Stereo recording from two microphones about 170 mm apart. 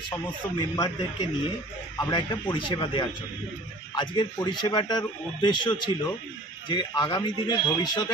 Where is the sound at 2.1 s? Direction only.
25° left (ahead or behind).